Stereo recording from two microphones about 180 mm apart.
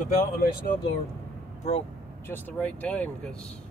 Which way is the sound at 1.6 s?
40° left (ahead or behind).